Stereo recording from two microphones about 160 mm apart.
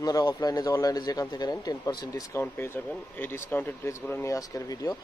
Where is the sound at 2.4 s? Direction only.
15° left (ahead or behind).